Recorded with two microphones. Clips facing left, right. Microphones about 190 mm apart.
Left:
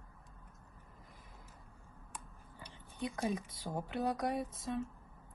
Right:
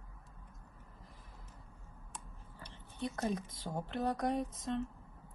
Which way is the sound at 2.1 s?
10° left (ahead or behind).